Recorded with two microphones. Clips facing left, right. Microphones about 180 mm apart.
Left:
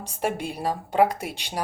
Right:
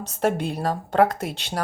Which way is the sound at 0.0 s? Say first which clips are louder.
Right 4 dB; 10° left (ahead or behind).